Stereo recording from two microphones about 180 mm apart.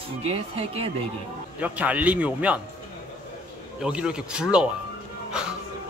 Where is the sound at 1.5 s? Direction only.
10° right (ahead or behind).